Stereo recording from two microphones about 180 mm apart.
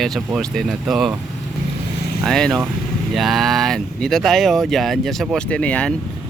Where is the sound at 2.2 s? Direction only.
Centre (ahead or behind).